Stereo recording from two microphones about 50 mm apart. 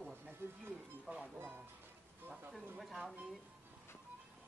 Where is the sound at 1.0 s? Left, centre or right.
Right.